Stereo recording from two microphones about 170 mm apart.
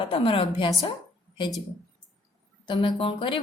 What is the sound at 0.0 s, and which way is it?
Speech, 30° left (ahead or behind).